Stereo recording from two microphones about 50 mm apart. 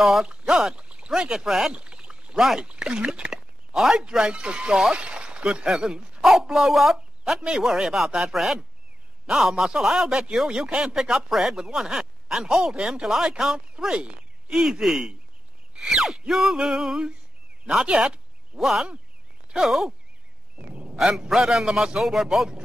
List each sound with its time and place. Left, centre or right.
0.0 s speech: centre
0.3 s a sound: right
0.7 s speech: right
1.7 s rowboat: centre
2.6 s speech: centre
3.7 s speech: centre
5.7 s speech: centre
18.6 s speech: centre
20.7 s a sound: right
21.3 s speech: centre